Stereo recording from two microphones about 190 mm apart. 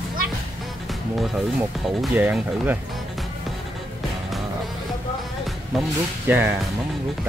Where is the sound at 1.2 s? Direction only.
Centre (ahead or behind).